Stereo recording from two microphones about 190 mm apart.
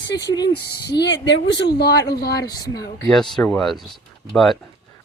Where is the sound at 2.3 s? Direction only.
20° left (ahead or behind).